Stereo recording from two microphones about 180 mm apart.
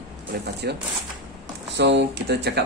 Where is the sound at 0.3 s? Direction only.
60° right (ahead or behind).